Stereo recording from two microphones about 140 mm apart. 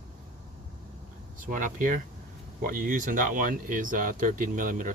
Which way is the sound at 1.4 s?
70° right (ahead or behind).